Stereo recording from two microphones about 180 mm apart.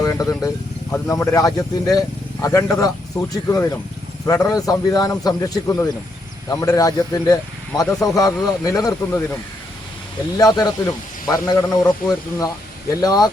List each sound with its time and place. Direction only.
0.0 s a man's voice: 20° left (ahead or behind)